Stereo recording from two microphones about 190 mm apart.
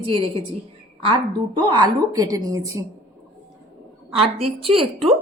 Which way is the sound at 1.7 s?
20° right (ahead or behind).